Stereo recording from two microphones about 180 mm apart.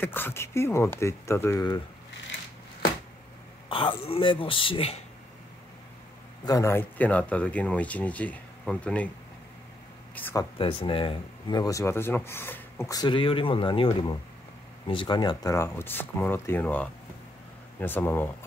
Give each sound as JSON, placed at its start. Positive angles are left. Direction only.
{"t": 0.0, "sound": "speech", "side_deg": 10}
{"t": 3.6, "sound": "speech", "side_deg": 30}
{"t": 6.4, "sound": "speech", "side_deg": 20}
{"t": 10.1, "sound": "speech", "side_deg": 10}
{"t": 10.6, "sound": "speech", "side_deg": 30}
{"t": 14.9, "sound": "speech", "side_deg": 25}